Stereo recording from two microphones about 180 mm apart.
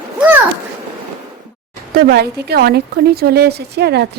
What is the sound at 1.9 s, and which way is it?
Speech, 60° right (ahead or behind).